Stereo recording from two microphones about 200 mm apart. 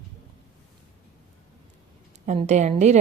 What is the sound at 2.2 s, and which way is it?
Speech, 35° right (ahead or behind).